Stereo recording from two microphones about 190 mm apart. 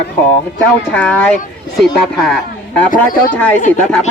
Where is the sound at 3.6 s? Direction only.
40° left (ahead or behind).